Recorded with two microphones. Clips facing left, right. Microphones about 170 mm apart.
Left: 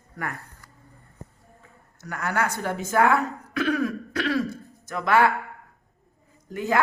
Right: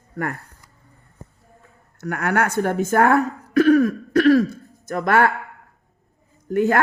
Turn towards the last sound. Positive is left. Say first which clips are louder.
# right 8 dB
turn(degrees=-55)  # may be behind; listen again after turning